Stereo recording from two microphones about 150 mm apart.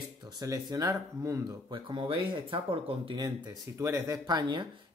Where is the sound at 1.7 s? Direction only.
35° right (ahead or behind); by 4.4 s 20° right (ahead or behind).